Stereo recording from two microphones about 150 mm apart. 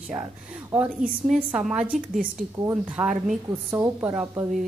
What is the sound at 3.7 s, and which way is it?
Speech, 15° right (ahead or behind).